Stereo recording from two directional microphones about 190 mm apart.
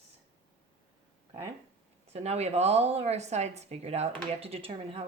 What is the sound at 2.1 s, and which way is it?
A woman's voice, 35° right (ahead or behind).